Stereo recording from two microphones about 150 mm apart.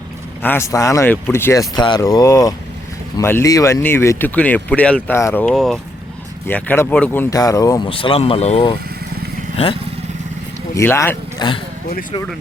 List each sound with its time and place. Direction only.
0.4 s speech: 15° left (ahead or behind)
7.9 s speech: 35° left (ahead or behind)
10.8 s speech: 15° left (ahead or behind)
11.3 s speech: 35° left (ahead or behind)